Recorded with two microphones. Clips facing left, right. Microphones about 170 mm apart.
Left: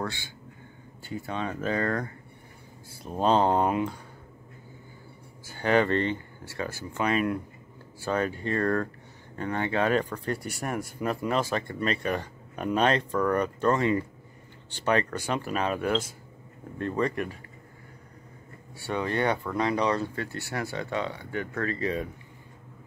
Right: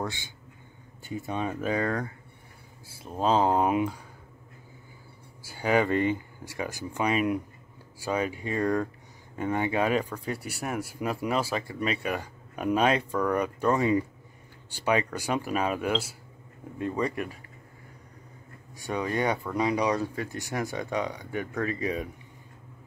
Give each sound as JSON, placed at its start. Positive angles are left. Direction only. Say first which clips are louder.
{"t": 0.0, "sound": "a man's voice", "louder": "even", "side_deg": -20}
{"t": 5.4, "sound": "speech", "louder": "left 1 dB", "side_deg": -10}
{"t": 18.8, "sound": "speech", "louder": "left 1 dB", "side_deg": -15}